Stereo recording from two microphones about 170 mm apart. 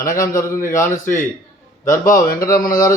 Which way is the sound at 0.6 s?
15° left (ahead or behind).